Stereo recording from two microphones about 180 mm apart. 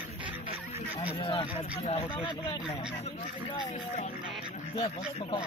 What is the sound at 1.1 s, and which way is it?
Speech, 30° left (ahead or behind).